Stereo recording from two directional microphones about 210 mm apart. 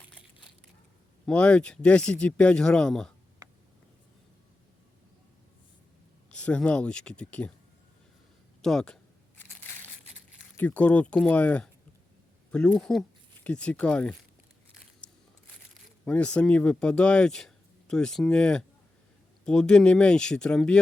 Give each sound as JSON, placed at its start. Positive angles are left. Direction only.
{"t": 1.3, "sound": "speech", "side_deg": 5}
{"t": 6.3, "sound": "speech", "side_deg": 5}
{"t": 8.6, "sound": "speech", "side_deg": 5}
{"t": 10.6, "sound": "speech", "side_deg": 10}
{"t": 15.0, "sound": "a sound", "side_deg": 5}
{"t": 15.7, "sound": "speech", "side_deg": 5}